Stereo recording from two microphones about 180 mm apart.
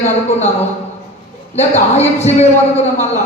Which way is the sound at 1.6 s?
40° left (ahead or behind).